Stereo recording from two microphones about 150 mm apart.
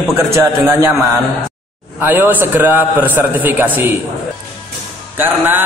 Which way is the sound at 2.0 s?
10° right (ahead or behind).